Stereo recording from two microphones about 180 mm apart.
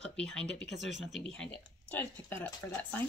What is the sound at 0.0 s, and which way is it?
Speech, 5° left (ahead or behind).